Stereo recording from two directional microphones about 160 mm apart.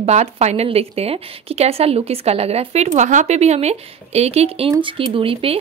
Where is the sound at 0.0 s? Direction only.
45° right (ahead or behind).